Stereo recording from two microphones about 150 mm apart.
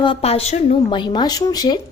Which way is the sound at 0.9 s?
30° left (ahead or behind).